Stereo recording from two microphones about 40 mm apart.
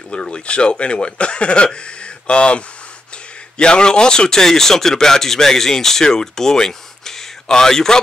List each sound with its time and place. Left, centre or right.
0.1 s speech: left